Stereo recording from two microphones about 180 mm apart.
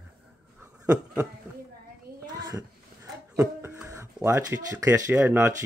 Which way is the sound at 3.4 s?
10° right (ahead or behind).